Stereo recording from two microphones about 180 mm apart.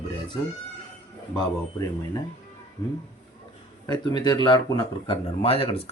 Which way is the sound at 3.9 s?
25° left (ahead or behind).